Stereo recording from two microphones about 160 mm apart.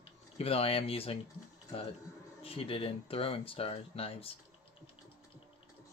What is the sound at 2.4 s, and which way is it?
Speech, 35° left (ahead or behind).